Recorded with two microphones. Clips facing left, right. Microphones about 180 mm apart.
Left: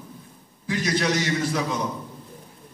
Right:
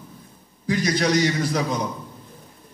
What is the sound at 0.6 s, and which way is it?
Speech, 40° right (ahead or behind).